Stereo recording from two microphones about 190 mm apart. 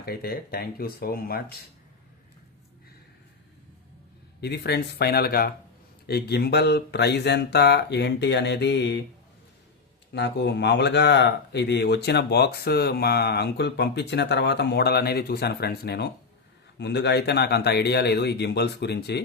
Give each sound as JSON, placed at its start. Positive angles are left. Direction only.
{"t": 0.0, "sound": "speech", "side_deg": 55}
{"t": 4.4, "sound": "speech", "side_deg": 60}
{"t": 10.1, "sound": "speech", "side_deg": 65}